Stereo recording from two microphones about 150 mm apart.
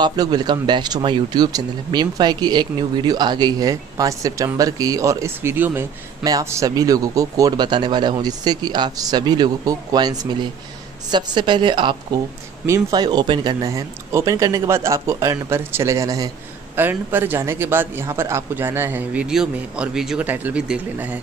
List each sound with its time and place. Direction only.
0.0 s a woman's voice: 25° right (ahead or behind); by 21.2 s 10° right (ahead or behind)